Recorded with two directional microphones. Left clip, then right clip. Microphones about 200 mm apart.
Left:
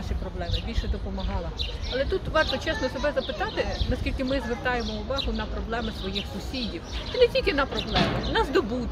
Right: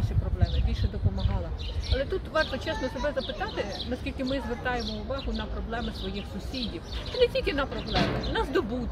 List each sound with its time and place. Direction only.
2.0 s speech: 5° left (ahead or behind)
7.9 s speech: 20° right (ahead or behind)
8.3 s speech: 10° left (ahead or behind)